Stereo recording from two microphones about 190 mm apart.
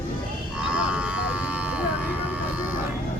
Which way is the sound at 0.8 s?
5° right (ahead or behind).